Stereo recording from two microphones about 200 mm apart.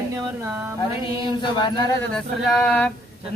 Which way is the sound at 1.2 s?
25° left (ahead or behind).